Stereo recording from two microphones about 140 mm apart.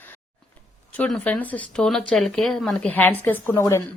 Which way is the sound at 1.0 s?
5° left (ahead or behind).